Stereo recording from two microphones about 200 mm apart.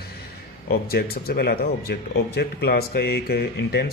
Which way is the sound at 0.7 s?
50° left (ahead or behind).